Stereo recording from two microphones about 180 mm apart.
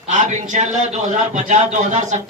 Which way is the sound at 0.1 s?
40° right (ahead or behind).